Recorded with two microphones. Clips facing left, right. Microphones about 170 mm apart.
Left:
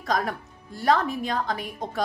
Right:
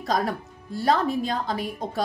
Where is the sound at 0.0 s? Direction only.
30° right (ahead or behind).